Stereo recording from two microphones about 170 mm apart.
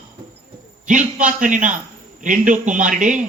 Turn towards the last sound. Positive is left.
turn(degrees=-50)  # may be behind; listen again after turning